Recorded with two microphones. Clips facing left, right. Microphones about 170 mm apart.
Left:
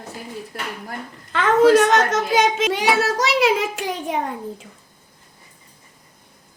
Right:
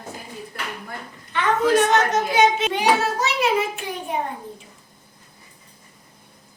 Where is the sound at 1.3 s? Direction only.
90° left.